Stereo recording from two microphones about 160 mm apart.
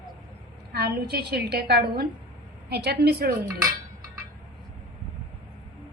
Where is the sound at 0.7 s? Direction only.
80° right.